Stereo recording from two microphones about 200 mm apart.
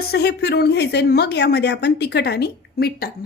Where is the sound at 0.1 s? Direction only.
55° left (ahead or behind).